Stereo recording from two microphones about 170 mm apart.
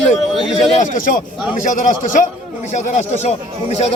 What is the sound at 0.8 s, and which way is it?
Speech, 50° left (ahead or behind).